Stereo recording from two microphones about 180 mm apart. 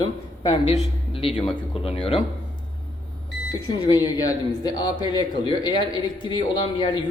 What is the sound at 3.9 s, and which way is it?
A man's voice, 20° left (ahead or behind).